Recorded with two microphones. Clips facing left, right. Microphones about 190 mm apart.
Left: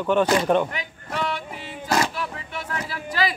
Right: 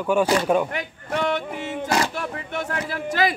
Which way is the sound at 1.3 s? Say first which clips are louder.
Right 6 dB; 50° right (ahead or behind).